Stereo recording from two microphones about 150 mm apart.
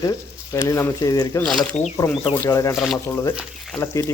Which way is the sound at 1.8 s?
10° left (ahead or behind).